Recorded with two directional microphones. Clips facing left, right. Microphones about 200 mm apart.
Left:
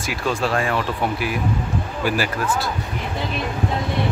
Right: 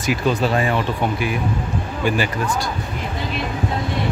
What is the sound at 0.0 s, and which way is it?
Speech, centre (ahead or behind).